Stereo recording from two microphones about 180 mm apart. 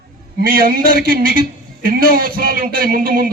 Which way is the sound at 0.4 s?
55° right (ahead or behind).